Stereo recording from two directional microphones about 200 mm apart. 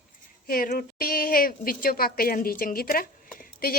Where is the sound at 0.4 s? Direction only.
45° left (ahead or behind).